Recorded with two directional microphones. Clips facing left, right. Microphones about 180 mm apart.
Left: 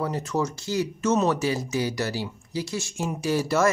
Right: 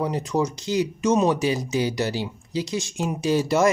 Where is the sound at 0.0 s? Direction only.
15° right (ahead or behind).